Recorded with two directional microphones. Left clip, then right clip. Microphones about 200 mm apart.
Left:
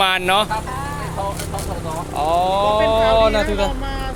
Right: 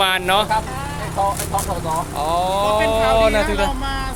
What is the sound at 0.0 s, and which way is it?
Speech, 15° left (ahead or behind).